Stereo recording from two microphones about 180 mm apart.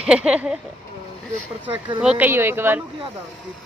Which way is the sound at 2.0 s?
10° right (ahead or behind).